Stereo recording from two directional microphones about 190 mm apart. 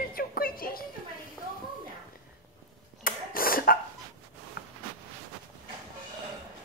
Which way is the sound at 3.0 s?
50° left (ahead or behind).